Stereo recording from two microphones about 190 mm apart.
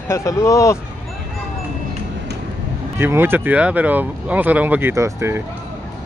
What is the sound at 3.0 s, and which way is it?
Speech, 10° right (ahead or behind).